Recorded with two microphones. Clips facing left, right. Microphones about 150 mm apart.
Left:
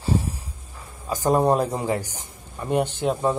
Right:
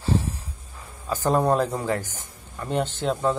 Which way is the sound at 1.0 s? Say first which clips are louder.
Left 2 dB; 15° left (ahead or behind).